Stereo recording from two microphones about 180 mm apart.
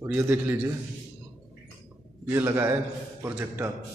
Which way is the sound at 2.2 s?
10° right (ahead or behind).